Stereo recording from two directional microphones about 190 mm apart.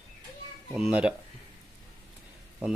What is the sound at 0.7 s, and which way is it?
Speech, 5° right (ahead or behind).